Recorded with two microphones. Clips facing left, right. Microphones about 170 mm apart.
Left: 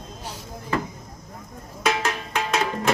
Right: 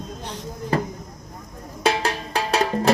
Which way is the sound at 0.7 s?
35° right (ahead or behind).